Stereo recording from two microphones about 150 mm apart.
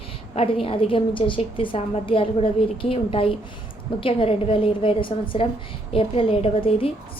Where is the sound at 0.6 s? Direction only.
35° left (ahead or behind).